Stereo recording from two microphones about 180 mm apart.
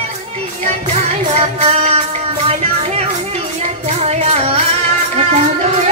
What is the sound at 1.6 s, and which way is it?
Music, 35° right (ahead or behind).